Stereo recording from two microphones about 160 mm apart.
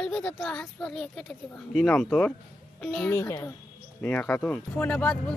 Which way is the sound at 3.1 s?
15° left (ahead or behind).